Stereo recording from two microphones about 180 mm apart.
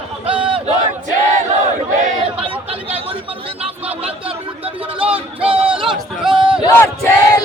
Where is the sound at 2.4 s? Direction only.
30° right (ahead or behind).